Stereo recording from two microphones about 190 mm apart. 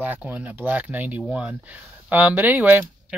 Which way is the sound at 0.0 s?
10° right (ahead or behind).